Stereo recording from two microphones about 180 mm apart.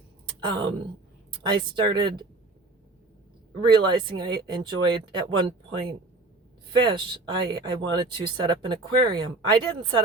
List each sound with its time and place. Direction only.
0.3 s speech: 25° right (ahead or behind)
3.6 s speech: 25° right (ahead or behind)